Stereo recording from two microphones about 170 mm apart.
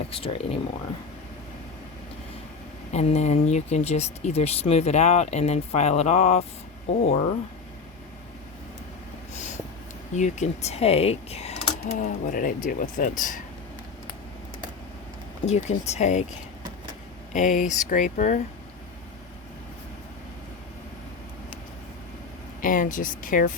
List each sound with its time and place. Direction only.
0.1 s speech: 35° left (ahead or behind)
2.9 s speech: 40° left (ahead or behind)
10.2 s speech: 45° left (ahead or behind)
15.4 s speech: 40° left (ahead or behind)
17.3 s speech: 50° left (ahead or behind)
22.6 s speech: 50° left (ahead or behind)